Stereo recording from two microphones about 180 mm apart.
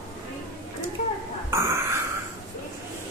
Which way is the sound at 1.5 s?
15° right (ahead or behind).